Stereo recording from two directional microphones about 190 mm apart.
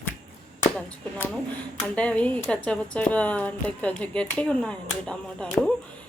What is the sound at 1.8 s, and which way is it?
Speech, 5° left (ahead or behind).